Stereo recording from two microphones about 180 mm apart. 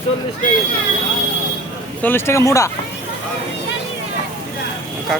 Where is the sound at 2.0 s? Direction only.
10° left (ahead or behind).